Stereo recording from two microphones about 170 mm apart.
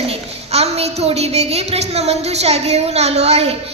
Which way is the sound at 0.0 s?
35° right (ahead or behind).